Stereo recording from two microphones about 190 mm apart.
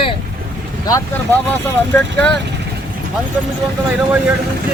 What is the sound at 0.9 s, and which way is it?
Speech, 10° left (ahead or behind).